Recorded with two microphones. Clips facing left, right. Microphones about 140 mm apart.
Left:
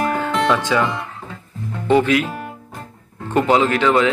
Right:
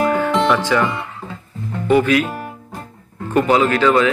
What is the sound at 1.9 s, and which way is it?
Speech, 20° left (ahead or behind).